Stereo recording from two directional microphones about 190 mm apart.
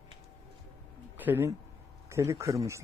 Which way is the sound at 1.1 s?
10° right (ahead or behind).